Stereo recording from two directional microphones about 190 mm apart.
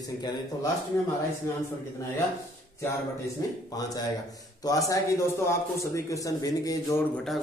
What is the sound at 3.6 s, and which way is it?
A man's voice, 20° left (ahead or behind).